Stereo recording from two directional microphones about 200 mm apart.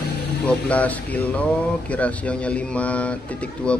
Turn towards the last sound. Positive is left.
turn(degrees=5)  # may be behind; listen again after turning